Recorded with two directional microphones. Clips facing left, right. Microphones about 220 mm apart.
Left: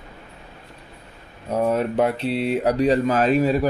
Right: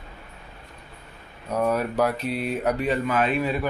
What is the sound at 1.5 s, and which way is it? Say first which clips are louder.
Speech: left 3 dB; 25° left (ahead or behind).